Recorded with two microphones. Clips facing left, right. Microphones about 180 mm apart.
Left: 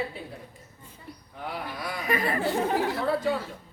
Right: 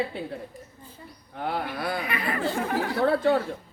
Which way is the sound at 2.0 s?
40° left (ahead or behind).